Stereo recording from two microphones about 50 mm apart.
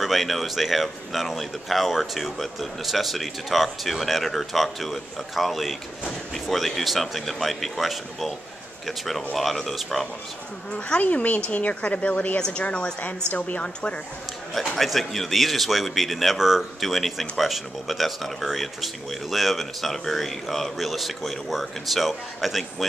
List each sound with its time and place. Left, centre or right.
0.0 s speech: centre
10.7 s speech: left
12.4 s speech: centre
13.3 s a woman's voice: left
14.5 s speech: centre